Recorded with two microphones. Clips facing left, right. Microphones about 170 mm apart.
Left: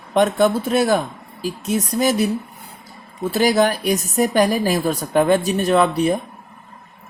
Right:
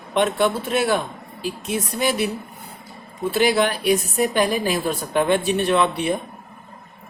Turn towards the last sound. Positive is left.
turn(degrees=40)  # may be behind; listen again after turning